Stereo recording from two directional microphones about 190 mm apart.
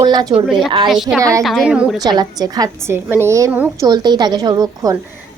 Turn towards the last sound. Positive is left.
turn(degrees=-20)  # may be behind; listen again after turning